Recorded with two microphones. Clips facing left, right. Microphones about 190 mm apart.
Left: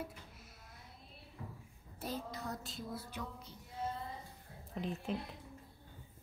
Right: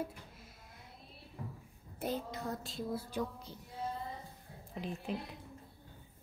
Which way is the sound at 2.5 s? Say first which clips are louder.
Right 5 dB; 30° right (ahead or behind).